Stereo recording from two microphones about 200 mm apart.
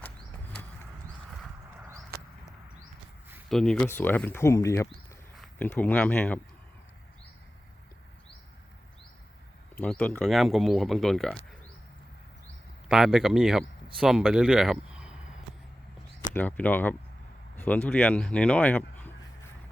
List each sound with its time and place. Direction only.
3.5 s speech: 5° left (ahead or behind)
9.8 s speech: 5° left (ahead or behind)
12.9 s speech: centre (ahead or behind)
16.3 s speech: 10° left (ahead or behind)